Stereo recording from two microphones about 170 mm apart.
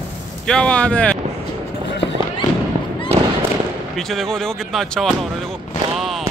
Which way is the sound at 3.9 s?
Centre (ahead or behind).